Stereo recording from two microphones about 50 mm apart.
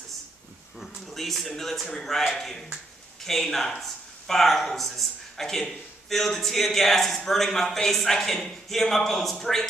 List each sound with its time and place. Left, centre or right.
0.7 s a man's voice: centre